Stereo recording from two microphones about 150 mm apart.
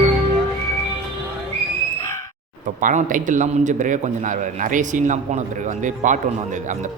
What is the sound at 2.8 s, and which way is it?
A man's voice, 60° right (ahead or behind).